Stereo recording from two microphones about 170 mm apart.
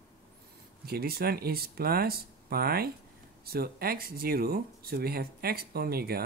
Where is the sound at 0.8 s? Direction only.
65° right (ahead or behind).